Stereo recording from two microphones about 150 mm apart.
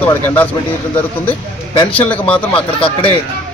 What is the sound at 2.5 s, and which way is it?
Speech, 40° left (ahead or behind).